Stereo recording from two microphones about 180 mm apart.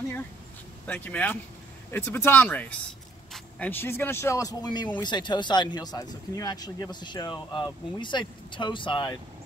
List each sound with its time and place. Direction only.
0.8 s speech: 10° left (ahead or behind); by 9.1 s 25° left (ahead or behind)